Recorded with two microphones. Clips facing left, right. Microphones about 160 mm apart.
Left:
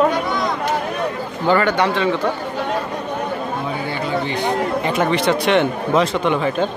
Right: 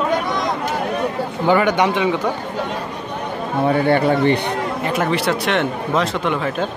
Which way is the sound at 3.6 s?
60° right (ahead or behind).